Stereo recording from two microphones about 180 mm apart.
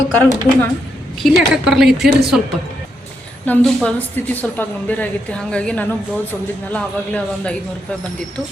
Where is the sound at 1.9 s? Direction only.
65° right (ahead or behind).